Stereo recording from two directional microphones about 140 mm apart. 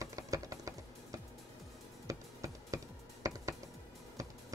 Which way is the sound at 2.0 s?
25° right (ahead or behind).